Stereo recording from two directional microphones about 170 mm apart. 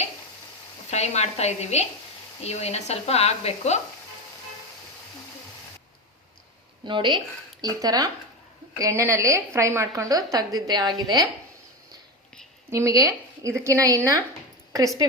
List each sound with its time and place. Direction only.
0.9 s speech: 40° left (ahead or behind)
6.8 s a woman's voice: 30° right (ahead or behind)
12.7 s speech: 20° right (ahead or behind)